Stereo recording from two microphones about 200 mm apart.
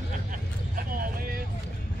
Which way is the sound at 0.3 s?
45° right (ahead or behind).